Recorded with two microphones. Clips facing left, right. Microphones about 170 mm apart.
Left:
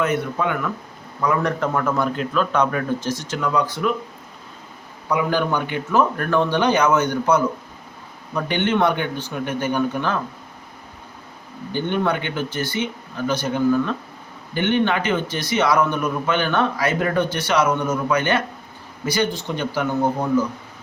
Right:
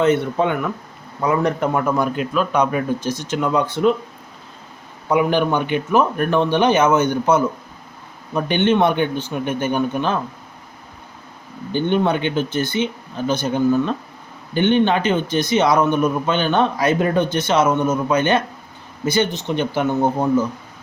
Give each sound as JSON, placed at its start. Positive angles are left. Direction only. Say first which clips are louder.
{"t": 0.0, "sound": "a man's voice", "louder": "right 5 dB", "side_deg": -25}
{"t": 5.0, "sound": "a man's voice", "louder": "right 4 dB", "side_deg": -25}
{"t": 11.9, "sound": "a man's voice", "louder": "right 4 dB", "side_deg": -25}